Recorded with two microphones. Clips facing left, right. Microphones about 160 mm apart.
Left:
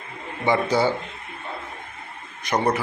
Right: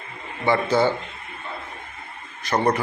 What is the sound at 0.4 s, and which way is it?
Speech, 15° left (ahead or behind).